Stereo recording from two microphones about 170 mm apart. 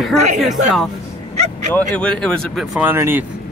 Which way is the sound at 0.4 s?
Centre (ahead or behind).